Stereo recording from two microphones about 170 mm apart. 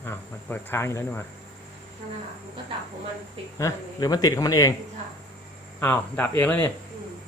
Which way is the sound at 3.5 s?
20° left (ahead or behind).